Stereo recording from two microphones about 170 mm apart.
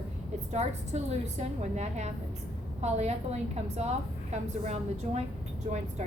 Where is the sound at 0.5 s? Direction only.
40° right (ahead or behind).